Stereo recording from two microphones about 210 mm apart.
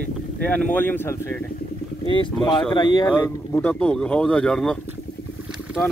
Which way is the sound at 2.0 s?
25° left (ahead or behind).